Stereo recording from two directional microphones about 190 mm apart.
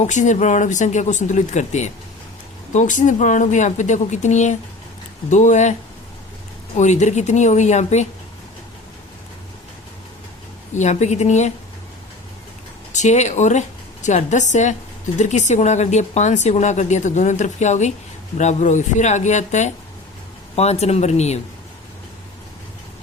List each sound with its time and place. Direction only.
0.0 s speech: 40° left (ahead or behind)
6.7 s speech: 40° left (ahead or behind)
10.8 s speech: 35° left (ahead or behind)
12.9 s a woman's voice: 40° left (ahead or behind)